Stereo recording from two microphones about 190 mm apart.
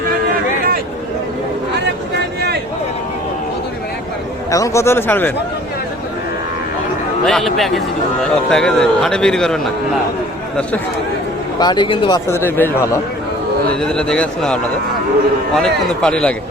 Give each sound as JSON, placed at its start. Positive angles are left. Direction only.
{"t": 4.5, "sound": "speech", "side_deg": 15}
{"t": 7.3, "sound": "a man's voice", "side_deg": 0}
{"t": 11.6, "sound": "speech", "side_deg": 25}
{"t": 12.4, "sound": "a man's voice", "side_deg": 10}